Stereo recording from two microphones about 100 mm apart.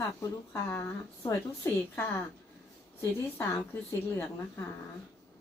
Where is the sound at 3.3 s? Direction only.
20° left (ahead or behind).